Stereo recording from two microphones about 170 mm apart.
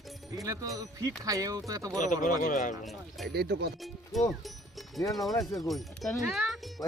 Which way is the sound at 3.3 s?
70° right (ahead or behind).